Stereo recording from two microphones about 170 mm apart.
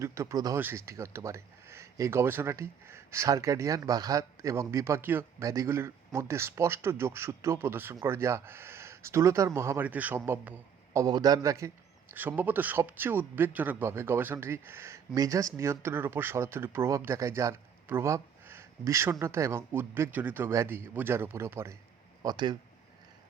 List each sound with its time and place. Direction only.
0.0 s speech: 15° right (ahead or behind)
11.0 s a man's voice: 25° right (ahead or behind)